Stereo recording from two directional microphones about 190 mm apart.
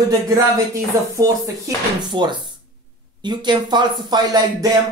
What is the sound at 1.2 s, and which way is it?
Speech, 15° right (ahead or behind).